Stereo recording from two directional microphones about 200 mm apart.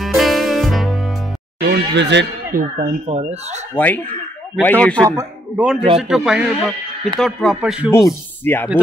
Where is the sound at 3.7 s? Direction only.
10° left (ahead or behind).